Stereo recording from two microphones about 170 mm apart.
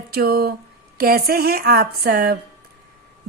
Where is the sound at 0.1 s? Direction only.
60° right (ahead or behind).